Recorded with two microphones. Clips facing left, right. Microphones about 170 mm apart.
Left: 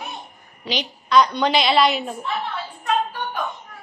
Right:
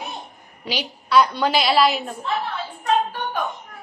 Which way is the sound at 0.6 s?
10° right (ahead or behind).